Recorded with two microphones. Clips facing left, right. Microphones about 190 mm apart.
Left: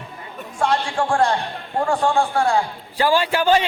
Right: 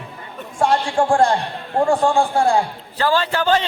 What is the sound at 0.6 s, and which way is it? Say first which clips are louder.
A man's voice: right 3 dB; 30° right (ahead or behind).